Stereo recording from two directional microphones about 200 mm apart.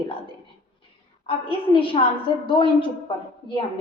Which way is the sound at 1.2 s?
25° left (ahead or behind).